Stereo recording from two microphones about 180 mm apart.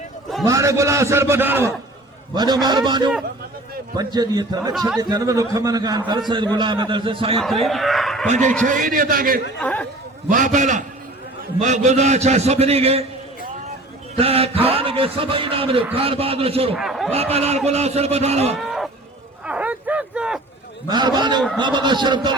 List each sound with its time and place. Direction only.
0.4 s a man's voice: 15° right (ahead or behind)
2.3 s a man's voice: 25° right (ahead or behind)
7.4 s speech: centre (ahead or behind)
8.6 s a man's voice: 45° right (ahead or behind)
9.6 s speech: 10° left (ahead or behind)
10.2 s a man's voice: 45° right (ahead or behind)
14.2 s a man's voice: 35° right (ahead or behind)
16.7 s speech: centre (ahead or behind)
17.1 s a man's voice: 35° right (ahead or behind)
18.5 s a sound: centre (ahead or behind)
20.8 s a man's voice: 25° right (ahead or behind)